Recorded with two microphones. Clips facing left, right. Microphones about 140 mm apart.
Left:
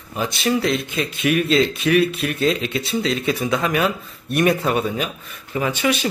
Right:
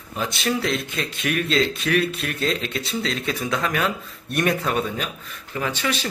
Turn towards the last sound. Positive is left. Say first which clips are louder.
# left 5 dB
turn(degrees=10)  # may be behind; listen again after turning